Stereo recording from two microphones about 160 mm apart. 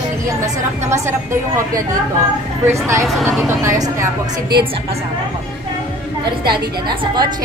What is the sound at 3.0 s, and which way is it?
Speech, centre (ahead or behind).